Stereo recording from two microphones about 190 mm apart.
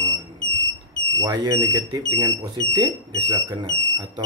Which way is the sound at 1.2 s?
20° right (ahead or behind).